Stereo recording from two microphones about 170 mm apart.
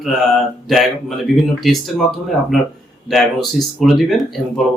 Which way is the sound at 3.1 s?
Centre (ahead or behind).